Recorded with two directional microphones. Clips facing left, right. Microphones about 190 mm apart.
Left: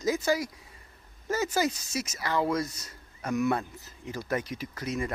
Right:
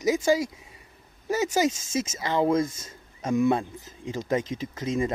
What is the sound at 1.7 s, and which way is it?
Speech, 90° right.